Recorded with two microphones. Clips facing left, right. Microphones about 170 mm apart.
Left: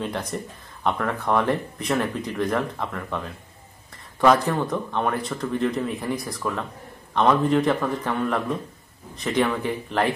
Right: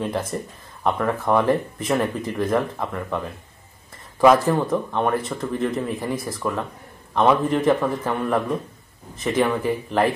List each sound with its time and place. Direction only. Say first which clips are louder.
0.0 s speech: right 3 dB; centre (ahead or behind)